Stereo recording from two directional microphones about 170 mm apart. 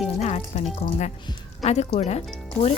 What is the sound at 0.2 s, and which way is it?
Music, 40° left (ahead or behind).